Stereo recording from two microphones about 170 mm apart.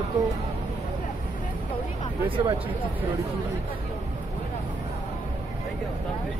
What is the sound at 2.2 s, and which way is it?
Speech, 30° right (ahead or behind).